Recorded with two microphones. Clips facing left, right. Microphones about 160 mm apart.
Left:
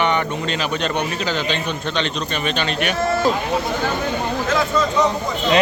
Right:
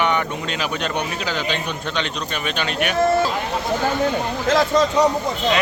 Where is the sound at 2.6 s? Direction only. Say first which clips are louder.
Right 2 dB; 10° right (ahead or behind).